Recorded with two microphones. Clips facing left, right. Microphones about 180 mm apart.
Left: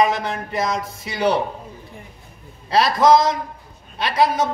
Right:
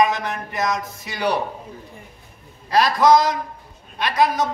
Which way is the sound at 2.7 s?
25° left (ahead or behind).